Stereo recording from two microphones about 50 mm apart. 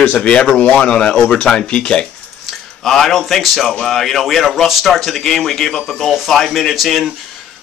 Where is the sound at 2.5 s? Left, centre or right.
Centre.